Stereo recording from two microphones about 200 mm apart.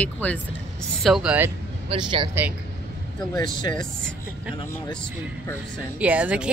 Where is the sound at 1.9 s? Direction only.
25° right (ahead or behind).